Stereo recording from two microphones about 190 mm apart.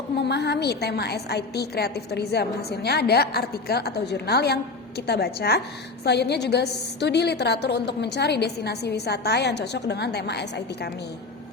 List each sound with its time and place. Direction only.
0.2 s a woman's voice: 60° left (ahead or behind)